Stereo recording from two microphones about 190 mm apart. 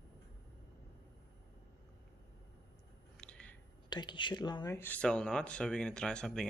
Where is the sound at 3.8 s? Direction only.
25° left (ahead or behind); by 6.4 s 5° left (ahead or behind).